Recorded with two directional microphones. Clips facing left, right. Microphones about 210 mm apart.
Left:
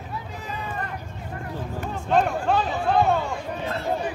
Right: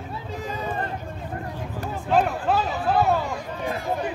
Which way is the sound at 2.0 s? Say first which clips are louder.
Even; 5° right (ahead or behind).